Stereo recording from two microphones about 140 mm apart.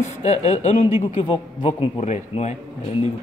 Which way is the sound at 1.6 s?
35° left (ahead or behind).